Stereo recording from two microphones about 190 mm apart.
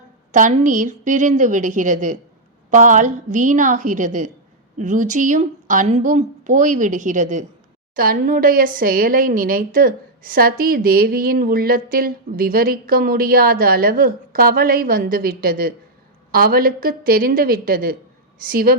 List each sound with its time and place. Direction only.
0.3 s a woman's voice: 40° right (ahead or behind)